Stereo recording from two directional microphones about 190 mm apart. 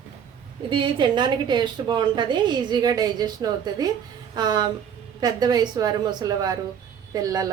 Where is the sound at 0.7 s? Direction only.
25° right (ahead or behind).